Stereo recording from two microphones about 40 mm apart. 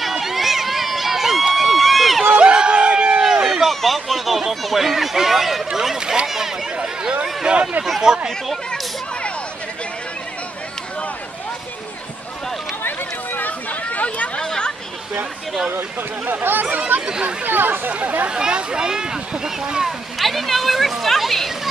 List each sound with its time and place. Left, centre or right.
0.0 s run: centre
2.3 s a sound: right
3.2 s run: centre
3.8 s a sound: centre
7.4 s speech: right
12.8 s run: left
13.9 s a sound: left
14.4 s a sound: centre
16.3 s speech: right
16.6 s speech: right
17.0 s speech: centre
17.5 s speech: right
18.3 s speech: right
20.2 s speech: centre